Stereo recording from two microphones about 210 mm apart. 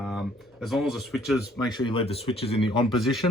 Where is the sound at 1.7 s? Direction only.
20° left (ahead or behind).